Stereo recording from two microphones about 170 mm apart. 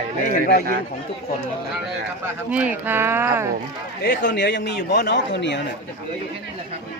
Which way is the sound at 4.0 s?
90° left.